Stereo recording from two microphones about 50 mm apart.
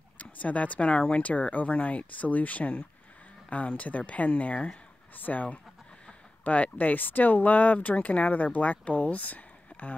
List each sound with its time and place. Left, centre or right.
0.2 s speech: left